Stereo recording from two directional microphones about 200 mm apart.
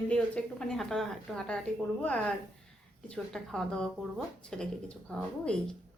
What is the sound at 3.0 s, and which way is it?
A woman's voice, centre (ahead or behind).